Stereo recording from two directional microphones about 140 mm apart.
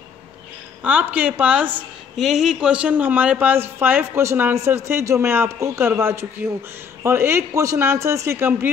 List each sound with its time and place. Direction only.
0.8 s a woman's voice: 10° right (ahead or behind)